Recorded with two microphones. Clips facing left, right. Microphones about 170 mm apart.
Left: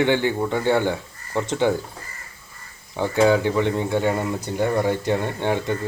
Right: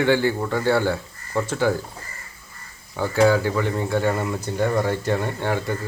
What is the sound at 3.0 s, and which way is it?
Speech, 20° left (ahead or behind).